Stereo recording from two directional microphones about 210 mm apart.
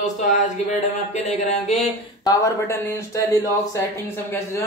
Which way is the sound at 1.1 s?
35° left (ahead or behind).